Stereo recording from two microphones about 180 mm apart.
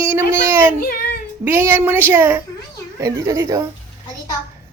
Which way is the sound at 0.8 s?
50° left (ahead or behind).